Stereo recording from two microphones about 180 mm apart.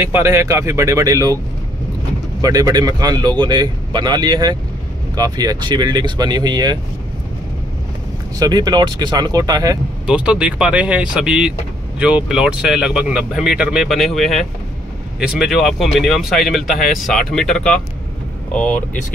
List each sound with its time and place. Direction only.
0.0 s speech: 15° right (ahead or behind)
2.4 s a man's voice: 20° right (ahead or behind)
8.4 s a man's voice: 20° right (ahead or behind)
10.0 s speech: 5° right (ahead or behind)
16.7 s speech: 50° left (ahead or behind)
17.0 s speech: centre (ahead or behind)